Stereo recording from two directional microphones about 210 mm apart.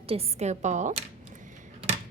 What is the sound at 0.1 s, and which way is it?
Speech, 30° right (ahead or behind).